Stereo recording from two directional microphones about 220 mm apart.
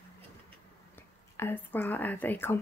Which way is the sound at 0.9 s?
10° left (ahead or behind).